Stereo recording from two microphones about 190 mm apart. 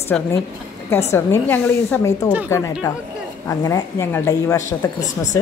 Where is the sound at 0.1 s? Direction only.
5° left (ahead or behind).